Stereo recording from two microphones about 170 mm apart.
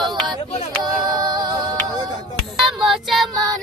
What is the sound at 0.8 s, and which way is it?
Music, 25° right (ahead or behind).